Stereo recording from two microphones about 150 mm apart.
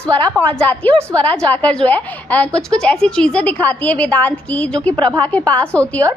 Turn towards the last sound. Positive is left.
turn(degrees=10)  # may be behind; listen again after turning